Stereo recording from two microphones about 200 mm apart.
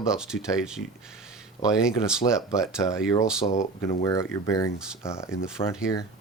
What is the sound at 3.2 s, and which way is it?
Speech, 5° right (ahead or behind).